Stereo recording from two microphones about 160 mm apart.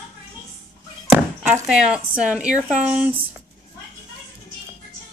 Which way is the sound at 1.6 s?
5° right (ahead or behind).